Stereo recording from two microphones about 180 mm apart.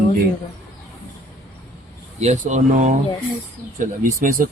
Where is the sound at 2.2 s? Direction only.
40° right (ahead or behind).